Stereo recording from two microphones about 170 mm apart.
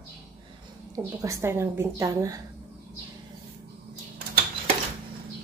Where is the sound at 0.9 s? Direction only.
20° right (ahead or behind).